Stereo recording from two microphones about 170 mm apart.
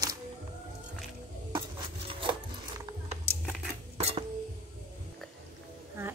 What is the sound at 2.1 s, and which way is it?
Wood, 30° right (ahead or behind).